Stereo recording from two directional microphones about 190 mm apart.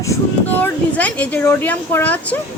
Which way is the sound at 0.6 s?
5° left (ahead or behind).